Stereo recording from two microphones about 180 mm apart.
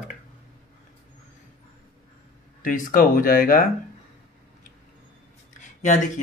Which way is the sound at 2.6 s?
50° left (ahead or behind).